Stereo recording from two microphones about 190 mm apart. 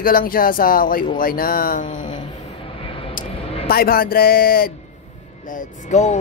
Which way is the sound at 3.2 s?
45° left (ahead or behind).